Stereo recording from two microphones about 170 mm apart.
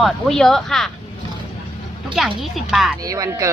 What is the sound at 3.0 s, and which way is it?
Speech, 20° right (ahead or behind).